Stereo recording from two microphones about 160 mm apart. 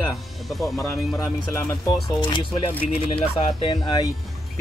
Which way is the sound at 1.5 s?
20° left (ahead or behind).